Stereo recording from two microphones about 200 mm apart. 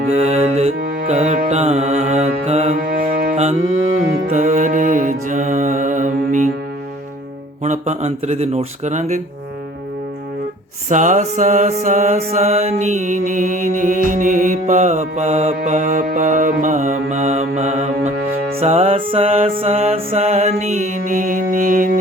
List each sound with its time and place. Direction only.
0.1 s music: 30° right (ahead or behind)
0.8 s music: 45° right (ahead or behind)
1.0 s music: 35° right (ahead or behind)
2.7 s music: 45° right (ahead or behind)
7.6 s music: 35° right (ahead or behind)
10.8 s music: 40° right (ahead or behind)